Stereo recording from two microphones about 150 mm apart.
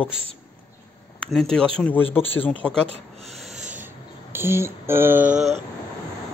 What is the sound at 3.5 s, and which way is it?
Rub, 55° right (ahead or behind).